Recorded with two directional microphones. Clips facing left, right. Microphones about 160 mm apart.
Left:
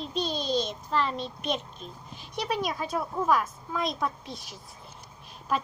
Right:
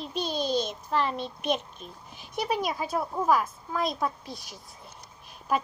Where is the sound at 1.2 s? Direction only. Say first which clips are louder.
Right 2 dB; 55° right (ahead or behind).